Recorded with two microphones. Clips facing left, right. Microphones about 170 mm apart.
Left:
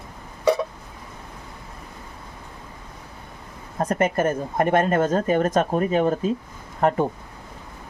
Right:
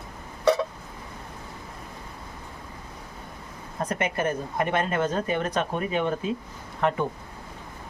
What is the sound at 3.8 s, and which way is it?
Speech, 45° left (ahead or behind).